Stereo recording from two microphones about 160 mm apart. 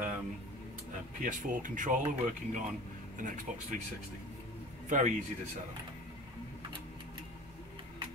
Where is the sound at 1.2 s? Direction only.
55° right (ahead or behind).